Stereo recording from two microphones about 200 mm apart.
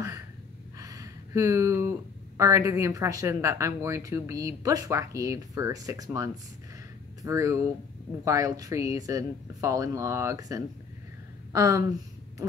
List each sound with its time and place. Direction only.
0.7 s speech: 15° right (ahead or behind)